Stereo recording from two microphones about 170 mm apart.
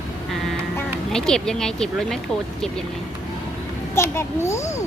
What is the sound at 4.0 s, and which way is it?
Speech, 15° left (ahead or behind).